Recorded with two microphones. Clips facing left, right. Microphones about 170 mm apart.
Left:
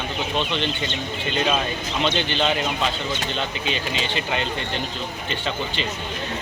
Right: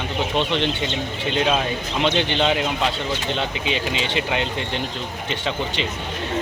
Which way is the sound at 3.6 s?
70° right (ahead or behind).